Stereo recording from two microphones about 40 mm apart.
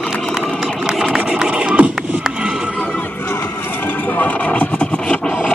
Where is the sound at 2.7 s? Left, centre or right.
Left.